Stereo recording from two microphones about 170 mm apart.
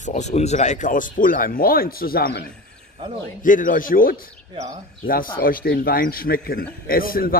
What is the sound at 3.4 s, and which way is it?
Speech, 50° left (ahead or behind).